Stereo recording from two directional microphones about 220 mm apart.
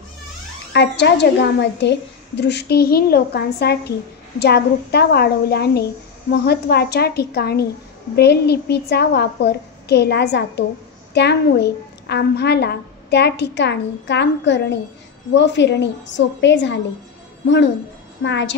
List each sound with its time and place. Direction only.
0.7 s a woman's voice: 50° left (ahead or behind)
18.2 s a woman's voice: 55° left (ahead or behind)